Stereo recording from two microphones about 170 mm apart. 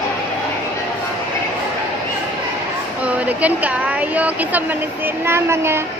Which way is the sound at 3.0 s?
10° right (ahead or behind).